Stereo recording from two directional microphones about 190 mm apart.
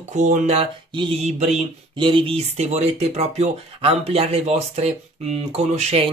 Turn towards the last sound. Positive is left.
turn(degrees=-35)  # may be behind; listen again after turning